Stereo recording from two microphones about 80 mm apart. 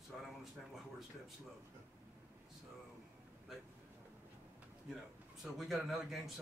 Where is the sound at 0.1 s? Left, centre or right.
Centre.